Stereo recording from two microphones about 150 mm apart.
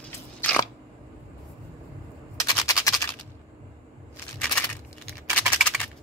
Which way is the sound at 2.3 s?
25° left (ahead or behind).